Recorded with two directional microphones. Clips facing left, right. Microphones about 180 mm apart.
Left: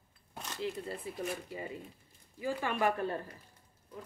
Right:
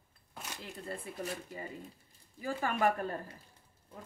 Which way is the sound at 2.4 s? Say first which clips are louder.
Even; 45° right (ahead or behind).